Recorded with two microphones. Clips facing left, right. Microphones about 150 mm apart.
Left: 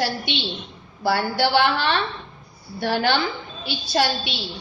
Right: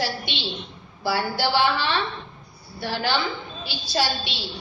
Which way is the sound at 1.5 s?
60° left (ahead or behind).